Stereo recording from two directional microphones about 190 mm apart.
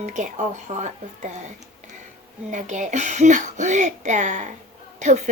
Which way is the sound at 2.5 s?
40° right (ahead or behind).